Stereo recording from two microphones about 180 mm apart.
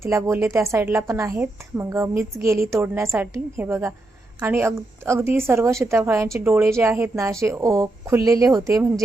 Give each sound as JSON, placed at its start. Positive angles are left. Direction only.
{"t": 0.0, "sound": "a woman's voice", "side_deg": -15}